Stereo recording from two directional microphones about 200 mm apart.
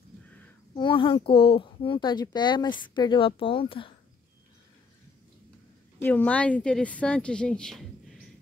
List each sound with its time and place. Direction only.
0.7 s speech: 25° left (ahead or behind)
5.9 s a woman's voice: 10° left (ahead or behind)